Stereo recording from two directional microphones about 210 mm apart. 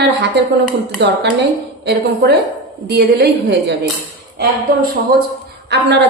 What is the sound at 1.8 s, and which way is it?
A woman's voice, 50° right (ahead or behind).